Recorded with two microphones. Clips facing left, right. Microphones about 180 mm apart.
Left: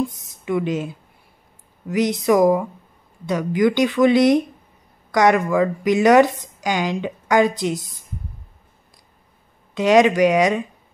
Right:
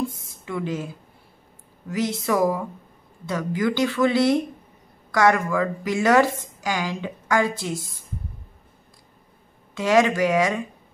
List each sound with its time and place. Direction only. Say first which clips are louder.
0.3 s speech: left 6 dB; 15° left (ahead or behind)
1.9 s a woman's voice: left 6 dB; 15° left (ahead or behind)
9.8 s a woman's voice: left 5 dB; 20° left (ahead or behind)